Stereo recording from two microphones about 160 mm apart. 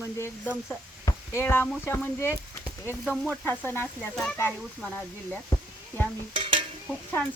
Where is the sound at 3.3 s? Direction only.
10° left (ahead or behind).